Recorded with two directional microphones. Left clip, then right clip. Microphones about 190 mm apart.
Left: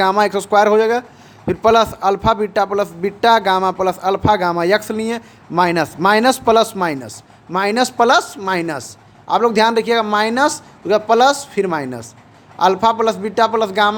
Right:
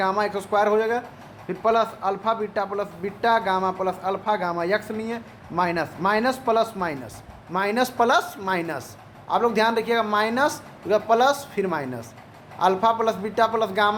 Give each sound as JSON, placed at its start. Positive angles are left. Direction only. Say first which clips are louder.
{"t": 0.0, "sound": "a man's voice", "louder": "left 9 dB", "side_deg": 55}